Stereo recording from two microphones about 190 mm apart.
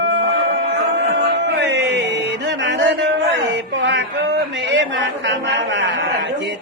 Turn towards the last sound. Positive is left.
turn(degrees=-70)  # may be behind; listen again after turning